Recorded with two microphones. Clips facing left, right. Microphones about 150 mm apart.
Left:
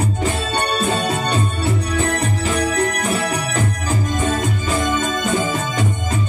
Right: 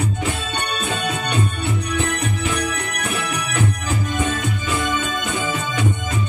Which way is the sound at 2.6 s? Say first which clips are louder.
Left 6 dB; 35° left (ahead or behind).